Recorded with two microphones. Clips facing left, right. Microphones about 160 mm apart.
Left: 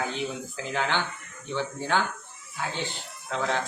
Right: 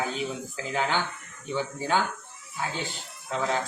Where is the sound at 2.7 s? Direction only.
40° right (ahead or behind).